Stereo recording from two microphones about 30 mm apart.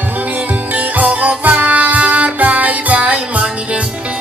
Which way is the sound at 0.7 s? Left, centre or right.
Right.